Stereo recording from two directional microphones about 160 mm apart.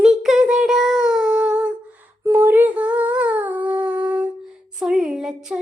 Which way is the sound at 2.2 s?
15° right (ahead or behind).